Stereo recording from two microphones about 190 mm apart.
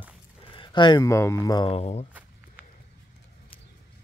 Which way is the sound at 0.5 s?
25° left (ahead or behind).